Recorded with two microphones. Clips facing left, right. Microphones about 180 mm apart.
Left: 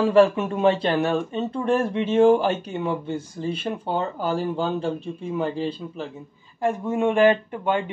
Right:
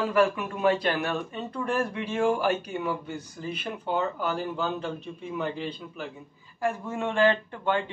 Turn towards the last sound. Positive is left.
turn(degrees=20)  # may be behind; listen again after turning